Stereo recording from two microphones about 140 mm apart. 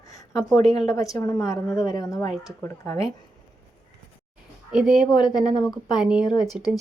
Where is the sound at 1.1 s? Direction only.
25° left (ahead or behind).